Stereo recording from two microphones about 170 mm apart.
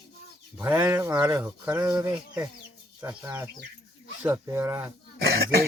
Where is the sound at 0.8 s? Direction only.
15° right (ahead or behind).